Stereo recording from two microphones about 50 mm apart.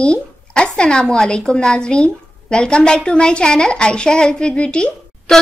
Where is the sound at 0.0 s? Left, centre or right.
Centre.